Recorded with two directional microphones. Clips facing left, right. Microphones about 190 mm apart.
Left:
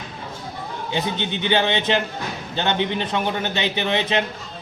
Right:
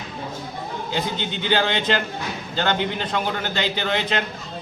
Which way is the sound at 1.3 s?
20° left (ahead or behind).